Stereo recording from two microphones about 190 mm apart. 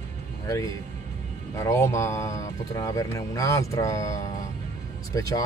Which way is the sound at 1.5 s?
15° left (ahead or behind).